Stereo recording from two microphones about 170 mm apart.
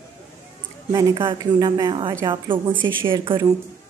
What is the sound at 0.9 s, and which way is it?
A woman's voice, 25° right (ahead or behind).